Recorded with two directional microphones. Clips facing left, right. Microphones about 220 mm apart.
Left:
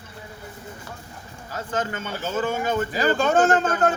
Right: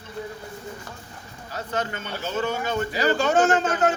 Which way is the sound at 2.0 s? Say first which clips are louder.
Left 1 dB; 50° left (ahead or behind).